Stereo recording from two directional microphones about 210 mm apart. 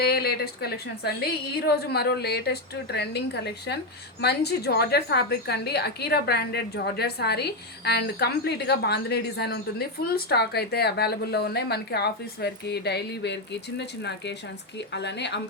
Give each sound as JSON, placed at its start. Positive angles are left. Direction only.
{"t": 0.0, "sound": "a woman's voice", "side_deg": 50}